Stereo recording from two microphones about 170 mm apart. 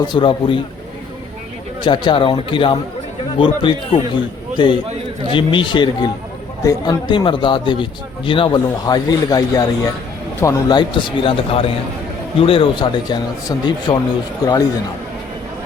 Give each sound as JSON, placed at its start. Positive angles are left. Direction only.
{"t": 0.1, "sound": "a man's voice", "side_deg": 30}
{"t": 1.8, "sound": "a man's voice", "side_deg": 30}